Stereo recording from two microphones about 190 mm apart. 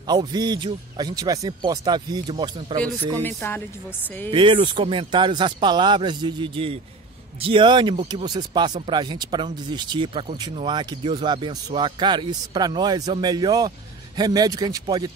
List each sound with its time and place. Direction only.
0.0 s speech: 20° right (ahead or behind)
3.2 s speech: 10° left (ahead or behind)
4.3 s speech: 25° right (ahead or behind)